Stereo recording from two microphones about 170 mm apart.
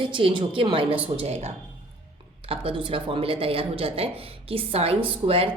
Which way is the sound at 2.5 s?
35° right (ahead or behind).